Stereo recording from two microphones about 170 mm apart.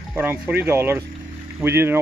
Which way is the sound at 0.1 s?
10° right (ahead or behind).